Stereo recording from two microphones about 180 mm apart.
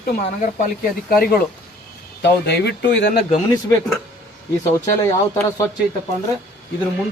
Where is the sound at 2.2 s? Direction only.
70° left (ahead or behind).